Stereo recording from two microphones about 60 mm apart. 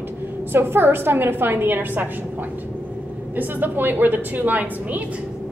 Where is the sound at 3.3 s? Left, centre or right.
Right.